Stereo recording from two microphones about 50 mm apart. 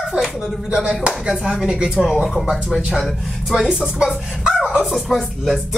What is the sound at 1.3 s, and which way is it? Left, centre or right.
Speech, centre.